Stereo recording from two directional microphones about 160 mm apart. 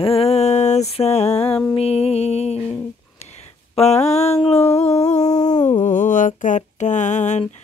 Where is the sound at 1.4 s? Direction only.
5° left (ahead or behind).